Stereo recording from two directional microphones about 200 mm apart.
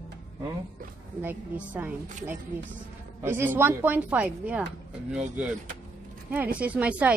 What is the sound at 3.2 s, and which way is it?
Speech, 10° right (ahead or behind).